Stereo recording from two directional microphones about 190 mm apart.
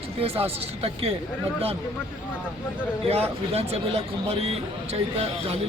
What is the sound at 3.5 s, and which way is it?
Speech, 30° right (ahead or behind).